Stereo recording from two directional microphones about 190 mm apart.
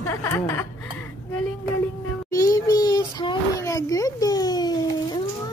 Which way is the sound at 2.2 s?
20° left (ahead or behind).